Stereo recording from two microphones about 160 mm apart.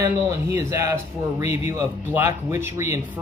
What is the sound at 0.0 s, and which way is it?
Speech, 15° right (ahead or behind).